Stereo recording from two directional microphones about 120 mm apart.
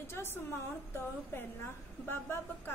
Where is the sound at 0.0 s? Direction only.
20° left (ahead or behind).